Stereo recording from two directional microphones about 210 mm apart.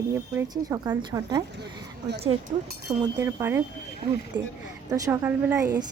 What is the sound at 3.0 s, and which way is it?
Speech, 15° right (ahead or behind).